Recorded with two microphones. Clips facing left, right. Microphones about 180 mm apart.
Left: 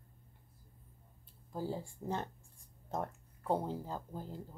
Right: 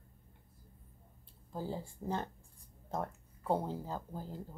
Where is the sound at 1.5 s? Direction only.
5° left (ahead or behind).